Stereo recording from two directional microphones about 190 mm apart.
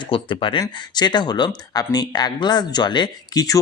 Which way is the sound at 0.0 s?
25° left (ahead or behind).